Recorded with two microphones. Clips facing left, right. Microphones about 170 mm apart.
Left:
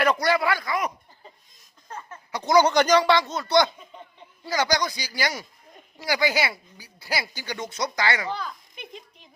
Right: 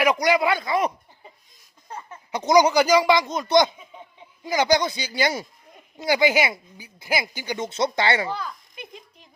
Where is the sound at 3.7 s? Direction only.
10° right (ahead or behind); by 8.2 s 25° right (ahead or behind).